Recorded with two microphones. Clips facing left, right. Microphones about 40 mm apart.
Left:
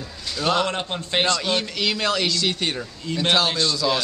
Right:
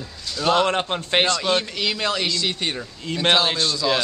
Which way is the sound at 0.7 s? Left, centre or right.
Right.